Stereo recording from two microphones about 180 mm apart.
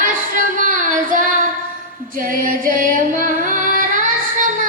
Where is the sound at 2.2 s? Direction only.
50° right (ahead or behind).